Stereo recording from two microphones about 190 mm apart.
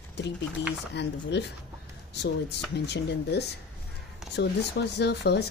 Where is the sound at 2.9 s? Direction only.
65° left (ahead or behind).